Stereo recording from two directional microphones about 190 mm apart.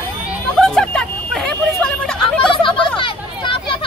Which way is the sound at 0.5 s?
5° left (ahead or behind).